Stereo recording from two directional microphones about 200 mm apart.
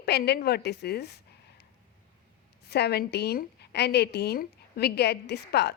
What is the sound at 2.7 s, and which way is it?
A woman's voice, 55° left (ahead or behind).